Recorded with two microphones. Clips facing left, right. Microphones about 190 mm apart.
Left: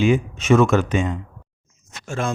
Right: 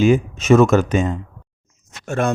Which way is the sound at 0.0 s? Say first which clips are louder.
Right 3 dB; 40° right (ahead or behind).